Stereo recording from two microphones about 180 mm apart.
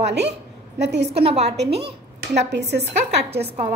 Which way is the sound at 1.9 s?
70° right (ahead or behind).